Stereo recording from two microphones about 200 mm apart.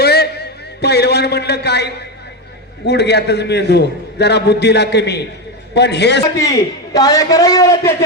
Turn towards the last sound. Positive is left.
turn(degrees=15)  # may be behind; listen again after turning